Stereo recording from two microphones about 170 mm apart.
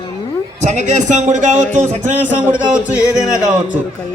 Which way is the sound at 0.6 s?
45° right (ahead or behind).